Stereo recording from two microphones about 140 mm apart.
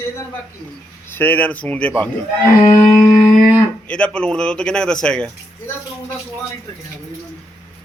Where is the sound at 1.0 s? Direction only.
15° left (ahead or behind).